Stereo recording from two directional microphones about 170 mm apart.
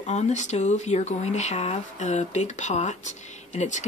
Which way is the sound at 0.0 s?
45° left (ahead or behind).